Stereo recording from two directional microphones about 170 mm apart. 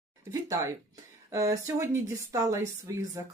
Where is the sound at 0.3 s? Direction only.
15° right (ahead or behind).